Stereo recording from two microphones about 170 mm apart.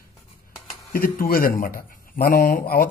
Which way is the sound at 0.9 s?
60° left (ahead or behind).